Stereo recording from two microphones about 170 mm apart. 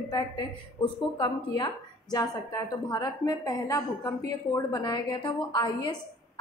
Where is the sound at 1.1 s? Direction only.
25° left (ahead or behind).